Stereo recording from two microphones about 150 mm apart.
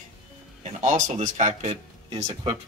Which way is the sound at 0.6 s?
55° right (ahead or behind).